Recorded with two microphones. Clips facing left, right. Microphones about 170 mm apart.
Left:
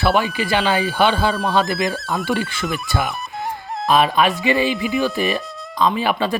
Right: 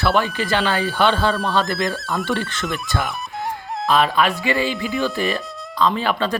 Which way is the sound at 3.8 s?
15° left (ahead or behind).